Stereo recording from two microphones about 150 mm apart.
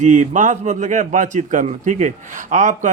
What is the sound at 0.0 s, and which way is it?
A man's voice, 55° right (ahead or behind).